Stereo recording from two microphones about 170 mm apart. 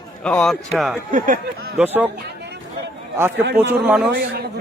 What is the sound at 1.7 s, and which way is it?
Speech, 10° right (ahead or behind).